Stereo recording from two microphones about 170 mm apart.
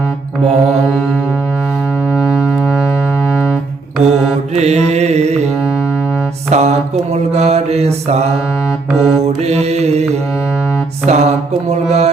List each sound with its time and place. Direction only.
0.4 s mantra: centre (ahead or behind)
2.0 s music: 5° right (ahead or behind)
4.5 s music: 40° right (ahead or behind)
5.5 s music: 5° right (ahead or behind)
6.5 s mantra: 40° right (ahead or behind)
8.9 s music: centre (ahead or behind)
9.2 s mantra: 40° right (ahead or behind)